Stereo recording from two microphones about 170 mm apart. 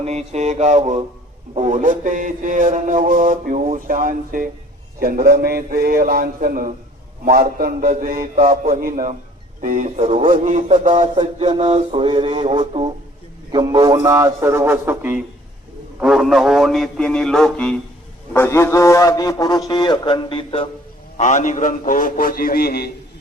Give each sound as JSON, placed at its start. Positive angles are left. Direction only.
{"t": 0.0, "sound": "a man's voice", "side_deg": -40}
{"t": 10.2, "sound": "speech", "side_deg": -50}
{"t": 11.1, "sound": "mantra", "side_deg": -35}
{"t": 13.5, "sound": "a man's voice", "side_deg": -25}
{"t": 16.0, "sound": "a man's voice", "side_deg": 0}
{"t": 21.2, "sound": "a man's voice", "side_deg": 45}